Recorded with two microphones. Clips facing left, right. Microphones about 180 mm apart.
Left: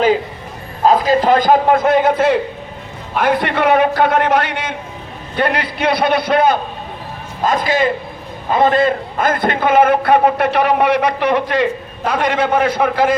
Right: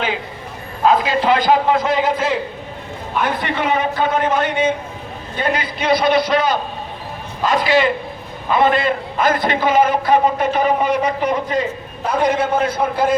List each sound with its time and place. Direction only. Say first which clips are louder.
0.9 s a man's voice: left 3 dB; 40° left (ahead or behind); by 13.1 s 75° left (ahead or behind)